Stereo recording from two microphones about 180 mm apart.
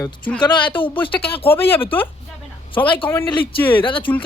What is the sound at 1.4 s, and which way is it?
Speech, 10° left (ahead or behind).